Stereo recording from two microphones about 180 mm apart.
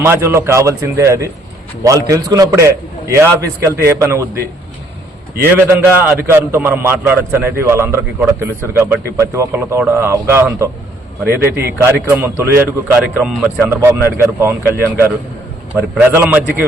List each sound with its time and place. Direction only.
0.0 s a man's voice: 15° right (ahead or behind)
5.4 s a man's voice: 10° right (ahead or behind)